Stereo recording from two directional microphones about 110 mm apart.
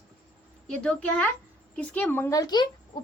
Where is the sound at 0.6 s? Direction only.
5° left (ahead or behind).